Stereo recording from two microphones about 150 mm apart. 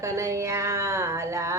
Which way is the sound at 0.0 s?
20° right (ahead or behind).